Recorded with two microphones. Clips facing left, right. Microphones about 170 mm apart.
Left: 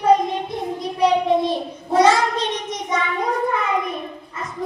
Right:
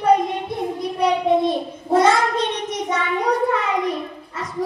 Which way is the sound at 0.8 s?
55° right (ahead or behind).